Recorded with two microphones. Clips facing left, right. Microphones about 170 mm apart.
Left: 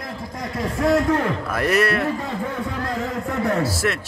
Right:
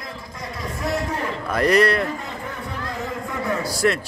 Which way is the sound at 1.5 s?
5° left (ahead or behind).